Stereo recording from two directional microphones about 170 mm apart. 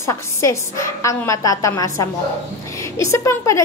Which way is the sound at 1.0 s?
20° left (ahead or behind).